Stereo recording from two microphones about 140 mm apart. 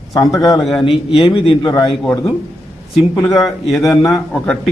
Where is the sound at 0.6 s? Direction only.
Centre (ahead or behind).